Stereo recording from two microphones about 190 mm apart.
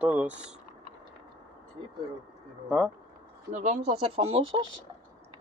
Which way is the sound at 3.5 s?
35° right (ahead or behind).